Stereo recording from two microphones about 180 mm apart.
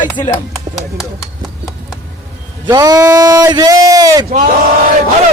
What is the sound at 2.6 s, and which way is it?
Speech, 20° right (ahead or behind).